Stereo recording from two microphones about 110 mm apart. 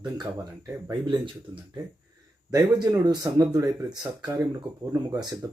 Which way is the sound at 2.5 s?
35° right (ahead or behind).